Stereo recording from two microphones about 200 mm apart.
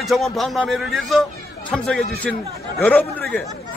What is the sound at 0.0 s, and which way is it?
A man's voice, centre (ahead or behind).